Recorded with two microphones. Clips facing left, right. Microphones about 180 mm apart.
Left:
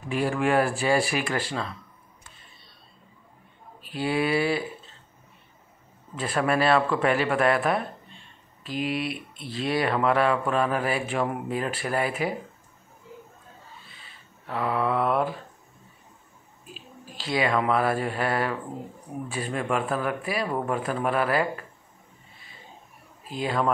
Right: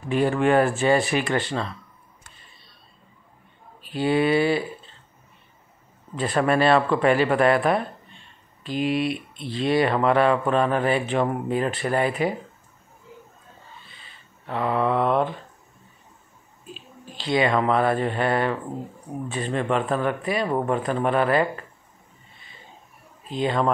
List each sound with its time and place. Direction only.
0.1 s speech: 5° left (ahead or behind)
3.8 s speech: centre (ahead or behind)
6.1 s speech: 5° left (ahead or behind)
14.4 s speech: centre (ahead or behind)
16.6 s speech: 5° left (ahead or behind)
20.4 s speech: 20° right (ahead or behind)
20.7 s speech: 5° left (ahead or behind)
23.2 s speech: 5° left (ahead or behind)